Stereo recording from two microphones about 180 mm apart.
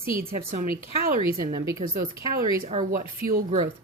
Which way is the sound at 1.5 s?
15° right (ahead or behind).